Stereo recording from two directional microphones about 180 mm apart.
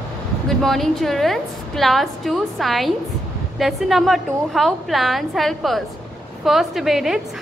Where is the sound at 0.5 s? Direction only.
Centre (ahead or behind).